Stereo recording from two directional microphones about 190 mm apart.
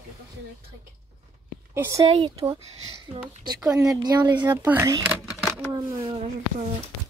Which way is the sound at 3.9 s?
20° right (ahead or behind).